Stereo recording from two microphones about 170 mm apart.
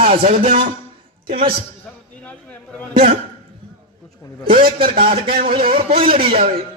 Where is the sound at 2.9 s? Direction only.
55° right (ahead or behind).